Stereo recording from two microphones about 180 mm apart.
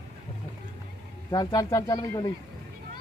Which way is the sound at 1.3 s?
20° left (ahead or behind).